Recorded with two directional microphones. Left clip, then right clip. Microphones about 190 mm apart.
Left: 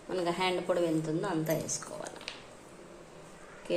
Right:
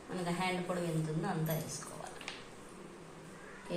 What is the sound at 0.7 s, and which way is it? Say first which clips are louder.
Speech: left 9 dB; 55° left (ahead or behind).